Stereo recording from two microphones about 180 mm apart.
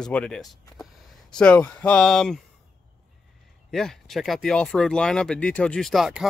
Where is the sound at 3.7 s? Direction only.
5° left (ahead or behind).